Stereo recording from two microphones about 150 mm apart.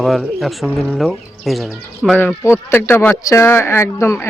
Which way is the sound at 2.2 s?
15° left (ahead or behind).